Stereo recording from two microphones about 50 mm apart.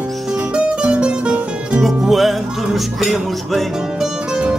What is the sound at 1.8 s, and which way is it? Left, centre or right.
Music, centre.